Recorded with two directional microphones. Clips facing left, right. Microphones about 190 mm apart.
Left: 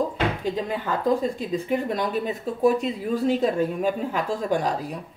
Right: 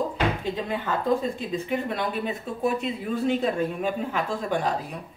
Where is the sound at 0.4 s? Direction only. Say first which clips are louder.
Left 2 dB; 40° left (ahead or behind).